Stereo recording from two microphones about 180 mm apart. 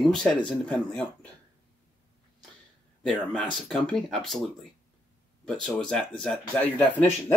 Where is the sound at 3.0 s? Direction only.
5° left (ahead or behind).